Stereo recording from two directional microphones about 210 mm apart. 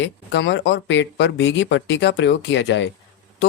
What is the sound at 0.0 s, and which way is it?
A man's voice, 60° left (ahead or behind).